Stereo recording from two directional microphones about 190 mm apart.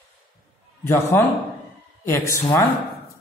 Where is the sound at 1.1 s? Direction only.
10° left (ahead or behind).